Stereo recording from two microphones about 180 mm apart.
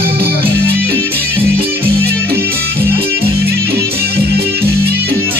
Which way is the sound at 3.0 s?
60° right (ahead or behind).